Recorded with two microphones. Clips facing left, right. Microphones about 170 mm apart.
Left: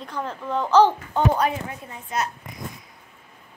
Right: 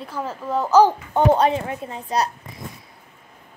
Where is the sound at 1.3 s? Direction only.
30° right (ahead or behind).